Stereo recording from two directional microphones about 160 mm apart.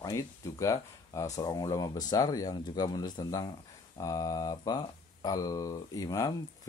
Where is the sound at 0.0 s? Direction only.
20° left (ahead or behind).